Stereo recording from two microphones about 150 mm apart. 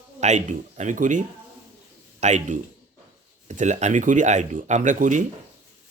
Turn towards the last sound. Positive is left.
turn(degrees=-60)  # may be behind; listen again after turning